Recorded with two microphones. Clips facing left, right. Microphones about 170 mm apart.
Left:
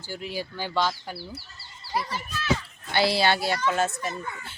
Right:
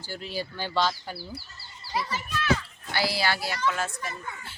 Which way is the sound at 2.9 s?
25° left (ahead or behind).